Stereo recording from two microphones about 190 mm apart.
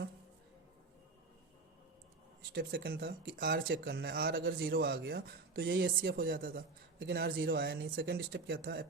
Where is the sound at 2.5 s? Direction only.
55° right (ahead or behind).